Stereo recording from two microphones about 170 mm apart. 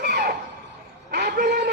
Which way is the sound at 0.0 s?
75° right (ahead or behind).